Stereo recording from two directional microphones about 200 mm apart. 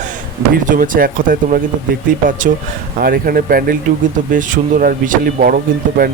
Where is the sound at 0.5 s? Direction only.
45° right (ahead or behind).